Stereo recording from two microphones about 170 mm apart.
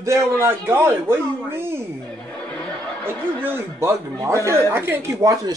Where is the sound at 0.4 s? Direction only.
15° right (ahead or behind).